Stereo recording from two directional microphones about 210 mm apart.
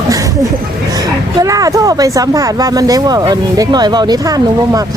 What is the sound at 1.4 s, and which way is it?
Speech, 15° right (ahead or behind).